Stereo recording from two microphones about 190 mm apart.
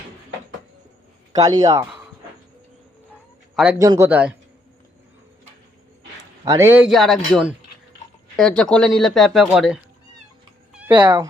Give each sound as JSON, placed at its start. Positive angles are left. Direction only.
{"t": 1.3, "sound": "a man's voice", "side_deg": -20}
{"t": 3.5, "sound": "a man's voice", "side_deg": -5}
{"t": 3.8, "sound": "a man's voice", "side_deg": -15}
{"t": 6.4, "sound": "a man's voice", "side_deg": -15}
{"t": 10.7, "sound": "cat", "side_deg": -5}